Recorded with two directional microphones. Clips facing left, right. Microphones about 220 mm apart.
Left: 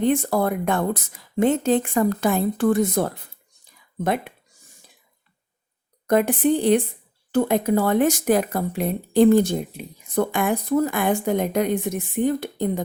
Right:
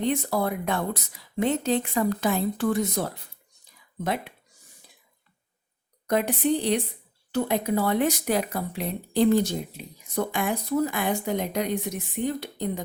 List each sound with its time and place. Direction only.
0.0 s speech: 50° left (ahead or behind)
6.1 s speech: 50° left (ahead or behind)